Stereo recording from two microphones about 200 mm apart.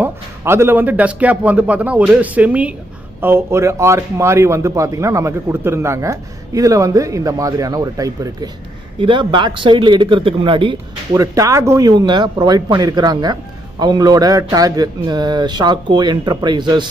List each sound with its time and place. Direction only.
0.0 s a man's voice: 10° right (ahead or behind)